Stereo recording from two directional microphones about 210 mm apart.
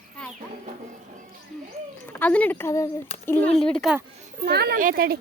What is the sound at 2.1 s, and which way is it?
A woman's voice, 5° left (ahead or behind).